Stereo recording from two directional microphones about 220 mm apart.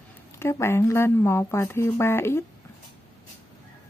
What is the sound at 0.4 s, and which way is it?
Speech, 10° left (ahead or behind).